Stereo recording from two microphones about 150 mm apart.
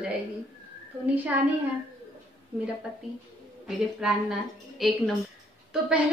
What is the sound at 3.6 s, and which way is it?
A woman's voice, 5° right (ahead or behind).